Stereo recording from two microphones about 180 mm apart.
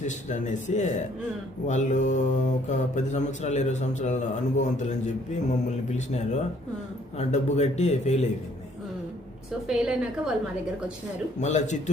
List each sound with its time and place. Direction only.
0.0 s mantra: 40° left (ahead or behind)
7.2 s mantra: 40° left (ahead or behind)
9.6 s a woman's voice: 5° right (ahead or behind)
11.3 s mantra: 40° left (ahead or behind)